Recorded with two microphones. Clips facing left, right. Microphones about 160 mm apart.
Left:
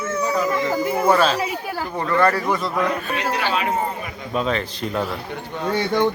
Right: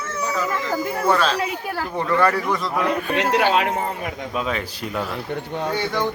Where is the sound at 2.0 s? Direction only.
10° right (ahead or behind).